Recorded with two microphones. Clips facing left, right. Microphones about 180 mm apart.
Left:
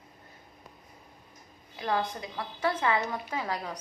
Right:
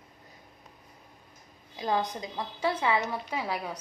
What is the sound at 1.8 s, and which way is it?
A woman's voice, 20° right (ahead or behind).